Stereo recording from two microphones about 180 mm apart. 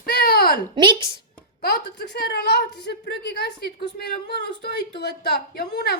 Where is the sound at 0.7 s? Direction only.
25° right (ahead or behind).